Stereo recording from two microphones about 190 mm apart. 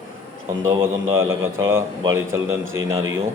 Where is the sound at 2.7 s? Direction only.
90° right.